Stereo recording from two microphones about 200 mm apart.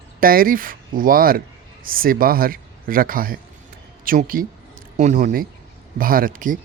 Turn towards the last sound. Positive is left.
turn(degrees=-45)  # may be behind; listen again after turning